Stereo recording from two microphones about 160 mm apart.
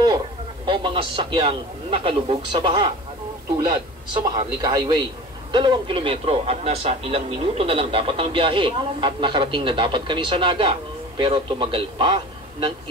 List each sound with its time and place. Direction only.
0.7 s a man's voice: 30° right (ahead or behind)